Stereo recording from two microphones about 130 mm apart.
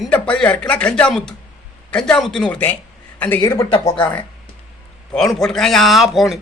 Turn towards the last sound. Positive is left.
turn(degrees=0)  # may be behind; listen again after turning